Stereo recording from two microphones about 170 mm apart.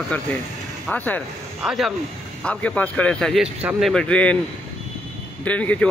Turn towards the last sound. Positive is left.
turn(degrees=10)  # may be behind; listen again after turning